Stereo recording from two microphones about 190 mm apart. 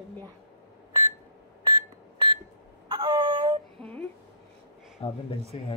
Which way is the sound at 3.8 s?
5° left (ahead or behind).